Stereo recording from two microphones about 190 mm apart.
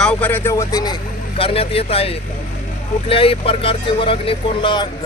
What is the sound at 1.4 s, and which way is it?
Speech, 30° left (ahead or behind).